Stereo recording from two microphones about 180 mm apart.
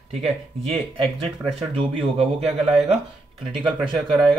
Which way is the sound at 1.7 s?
30° right (ahead or behind).